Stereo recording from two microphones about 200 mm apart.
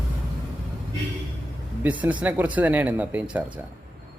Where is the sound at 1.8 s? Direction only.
5° right (ahead or behind).